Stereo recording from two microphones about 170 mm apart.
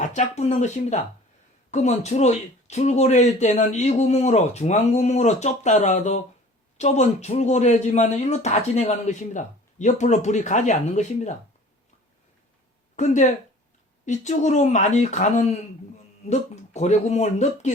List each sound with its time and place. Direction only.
0.0 s speech: 45° left (ahead or behind)
13.0 s speech: 45° left (ahead or behind)